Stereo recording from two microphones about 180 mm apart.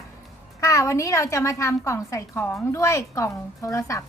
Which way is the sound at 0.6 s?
15° left (ahead or behind).